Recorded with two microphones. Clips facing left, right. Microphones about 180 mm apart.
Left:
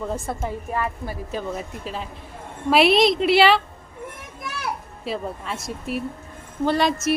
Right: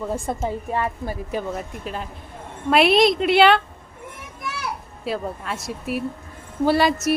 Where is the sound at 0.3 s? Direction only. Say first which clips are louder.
Right 3 dB; 25° right (ahead or behind).